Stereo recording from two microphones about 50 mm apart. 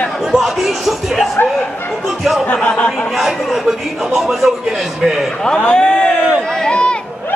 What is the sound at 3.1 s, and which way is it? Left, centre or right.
Speech, centre.